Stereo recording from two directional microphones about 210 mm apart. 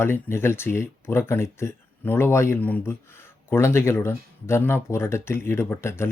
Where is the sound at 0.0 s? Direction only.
10° left (ahead or behind).